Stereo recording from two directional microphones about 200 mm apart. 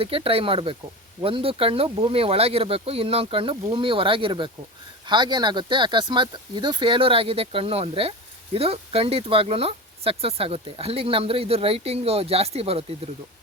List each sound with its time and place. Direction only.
0.0 s speech: 25° right (ahead or behind)